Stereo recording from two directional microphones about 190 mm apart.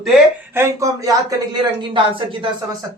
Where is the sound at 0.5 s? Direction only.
15° right (ahead or behind).